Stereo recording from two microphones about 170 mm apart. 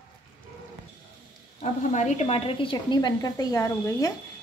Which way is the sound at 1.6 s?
45° left (ahead or behind).